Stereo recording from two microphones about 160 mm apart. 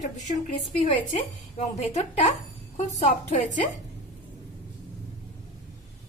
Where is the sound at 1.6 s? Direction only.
45° left (ahead or behind).